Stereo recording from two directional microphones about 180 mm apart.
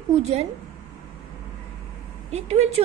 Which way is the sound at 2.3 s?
35° right (ahead or behind).